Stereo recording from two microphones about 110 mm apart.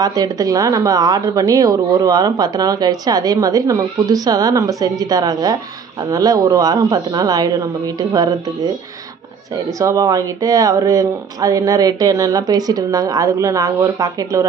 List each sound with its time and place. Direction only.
0.0 s a woman's voice: 35° right (ahead or behind)
9.8 s a woman's voice: 30° right (ahead or behind)